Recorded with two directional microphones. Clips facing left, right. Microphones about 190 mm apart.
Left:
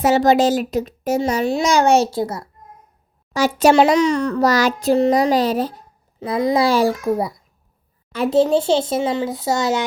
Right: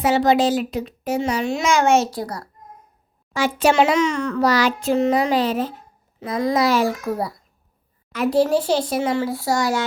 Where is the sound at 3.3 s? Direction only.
40° left (ahead or behind).